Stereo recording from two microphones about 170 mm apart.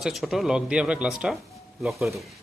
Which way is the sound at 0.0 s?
Centre (ahead or behind).